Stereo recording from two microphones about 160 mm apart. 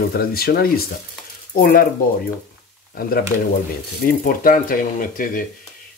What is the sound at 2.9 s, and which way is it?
Speech, 70° left (ahead or behind).